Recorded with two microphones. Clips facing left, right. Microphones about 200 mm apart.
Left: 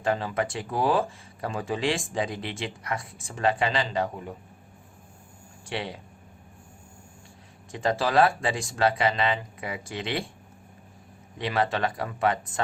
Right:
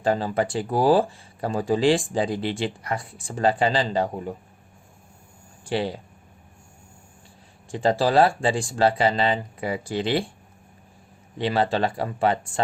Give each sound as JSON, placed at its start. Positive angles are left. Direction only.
{"t": 0.0, "sound": "speech", "side_deg": -35}
{"t": 5.6, "sound": "speech", "side_deg": -35}
{"t": 7.7, "sound": "speech", "side_deg": -30}
{"t": 11.3, "sound": "speech", "side_deg": -30}